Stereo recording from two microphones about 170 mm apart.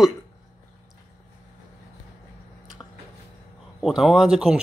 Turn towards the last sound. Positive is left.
turn(degrees=-5)  # may be behind; listen again after turning